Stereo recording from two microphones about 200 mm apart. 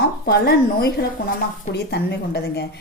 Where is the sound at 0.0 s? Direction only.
55° left (ahead or behind).